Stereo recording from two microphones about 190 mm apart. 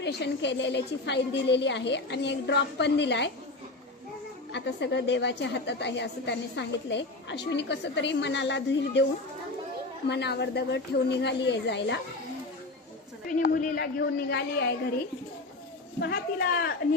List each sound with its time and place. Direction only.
0.0 s a woman's voice: 65° left (ahead or behind)
4.5 s a woman's voice: 65° left (ahead or behind)
10.1 s a woman's voice: 65° left (ahead or behind)
13.4 s a woman's voice: 50° left (ahead or behind)